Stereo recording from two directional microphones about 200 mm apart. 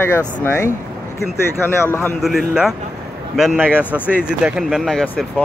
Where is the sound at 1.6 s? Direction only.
10° left (ahead or behind).